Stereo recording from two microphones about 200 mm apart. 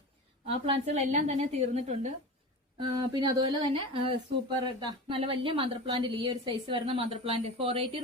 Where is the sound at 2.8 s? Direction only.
20° right (ahead or behind).